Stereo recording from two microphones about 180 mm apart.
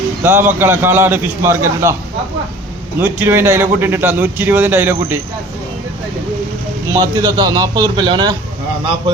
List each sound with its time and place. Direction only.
0.2 s a man's voice: 10° right (ahead or behind)
3.0 s a man's voice: 10° right (ahead or behind)
6.9 s a man's voice: 20° right (ahead or behind)